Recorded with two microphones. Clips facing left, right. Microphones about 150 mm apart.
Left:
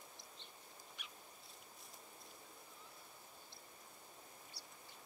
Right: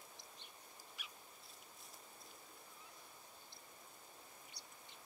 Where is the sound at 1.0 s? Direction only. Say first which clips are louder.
Right 1 dB; 5° right (ahead or behind).